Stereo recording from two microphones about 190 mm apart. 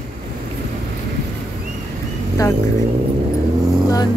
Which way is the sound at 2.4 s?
20° left (ahead or behind).